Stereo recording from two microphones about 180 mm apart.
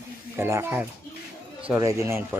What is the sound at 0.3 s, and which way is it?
Speech, 15° right (ahead or behind).